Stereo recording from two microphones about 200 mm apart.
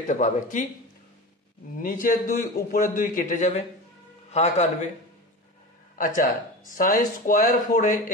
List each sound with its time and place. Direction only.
0.0 s speech: 40° left (ahead or behind)
1.8 s a man's voice: 45° left (ahead or behind)
5.9 s speech: 45° left (ahead or behind)